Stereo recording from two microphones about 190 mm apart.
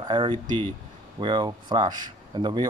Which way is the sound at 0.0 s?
25° right (ahead or behind).